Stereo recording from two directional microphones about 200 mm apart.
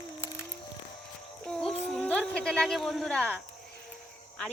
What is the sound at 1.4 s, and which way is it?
Speech, 5° left (ahead or behind).